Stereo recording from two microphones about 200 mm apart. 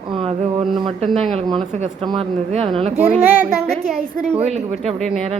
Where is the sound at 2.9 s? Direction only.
10° right (ahead or behind).